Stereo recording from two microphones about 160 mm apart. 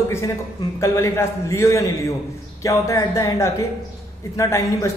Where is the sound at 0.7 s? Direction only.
15° left (ahead or behind).